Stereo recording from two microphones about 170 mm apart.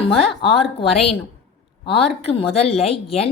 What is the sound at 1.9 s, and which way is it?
A woman's voice, 35° left (ahead or behind).